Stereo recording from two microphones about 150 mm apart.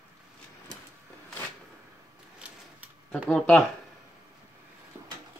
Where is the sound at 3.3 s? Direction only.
5° left (ahead or behind).